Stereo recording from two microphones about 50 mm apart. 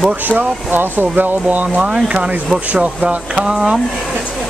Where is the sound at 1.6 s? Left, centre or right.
Right.